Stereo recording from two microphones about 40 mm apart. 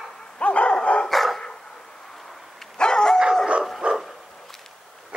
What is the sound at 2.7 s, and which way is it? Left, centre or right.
Dog, centre.